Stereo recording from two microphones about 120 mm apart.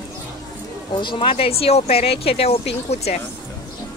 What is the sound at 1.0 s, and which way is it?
Speech, 45° left (ahead or behind).